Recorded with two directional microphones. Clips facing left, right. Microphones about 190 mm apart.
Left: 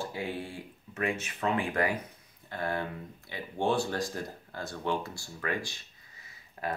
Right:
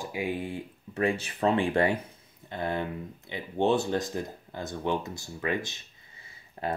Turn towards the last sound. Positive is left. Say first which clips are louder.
# right 3 dB
turn(degrees=-25)  # may be behind; listen again after turning